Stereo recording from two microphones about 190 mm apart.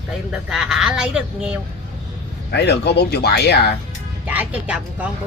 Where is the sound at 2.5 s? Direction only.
60° left (ahead or behind).